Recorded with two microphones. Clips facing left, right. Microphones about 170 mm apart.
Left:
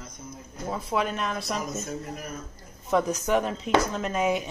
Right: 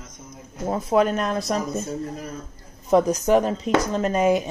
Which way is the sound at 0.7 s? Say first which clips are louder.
Right 8 dB; 45° right (ahead or behind).